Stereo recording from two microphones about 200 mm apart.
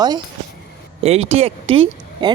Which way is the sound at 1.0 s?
30° right (ahead or behind).